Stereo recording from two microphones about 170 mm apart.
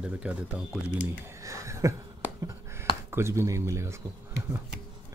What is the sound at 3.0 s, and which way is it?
Speech, 15° right (ahead or behind).